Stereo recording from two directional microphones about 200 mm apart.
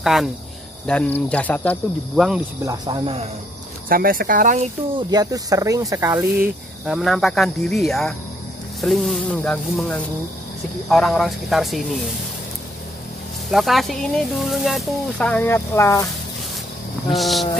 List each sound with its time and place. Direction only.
0.0 s speech: centre (ahead or behind)
2.6 s speech: 15° right (ahead or behind)
3.9 s speech: 45° right (ahead or behind)
4.9 s speech: 20° right (ahead or behind)
6.9 s speech: centre (ahead or behind)
13.5 s speech: centre (ahead or behind)
17.1 s speech: centre (ahead or behind)